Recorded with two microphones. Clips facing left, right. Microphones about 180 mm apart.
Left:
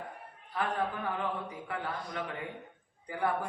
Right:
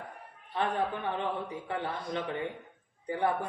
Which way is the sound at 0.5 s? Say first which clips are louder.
Right 2 dB; 25° right (ahead or behind).